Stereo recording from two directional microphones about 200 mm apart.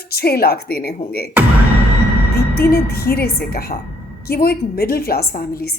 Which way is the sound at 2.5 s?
50° left (ahead or behind).